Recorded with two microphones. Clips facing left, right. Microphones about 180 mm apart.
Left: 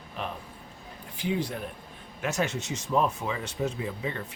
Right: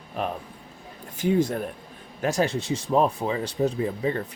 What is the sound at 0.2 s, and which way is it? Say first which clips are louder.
Speech: right 7 dB; 45° right (ahead or behind).